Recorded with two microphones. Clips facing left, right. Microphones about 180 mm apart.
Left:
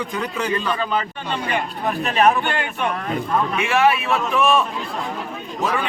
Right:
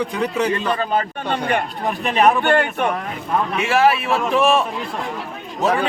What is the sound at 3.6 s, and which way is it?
Speech, 35° right (ahead or behind).